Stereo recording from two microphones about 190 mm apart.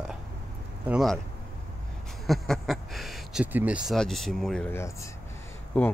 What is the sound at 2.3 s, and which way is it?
Speech, centre (ahead or behind).